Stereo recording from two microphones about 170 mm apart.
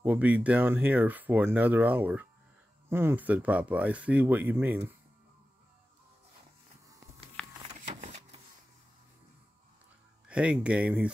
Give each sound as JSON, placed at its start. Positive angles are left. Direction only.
{"t": 0.0, "sound": "speech", "side_deg": -10}
{"t": 7.4, "sound": "a sound", "side_deg": 5}
{"t": 7.9, "sound": "vehicle", "side_deg": -40}
{"t": 10.2, "sound": "speech", "side_deg": -5}